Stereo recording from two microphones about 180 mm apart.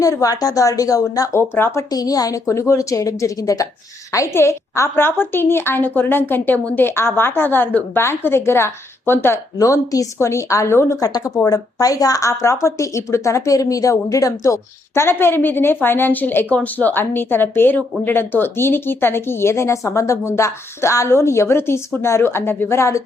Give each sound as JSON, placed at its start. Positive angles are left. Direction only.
{"t": 0.0, "sound": "a woman's voice", "side_deg": 20}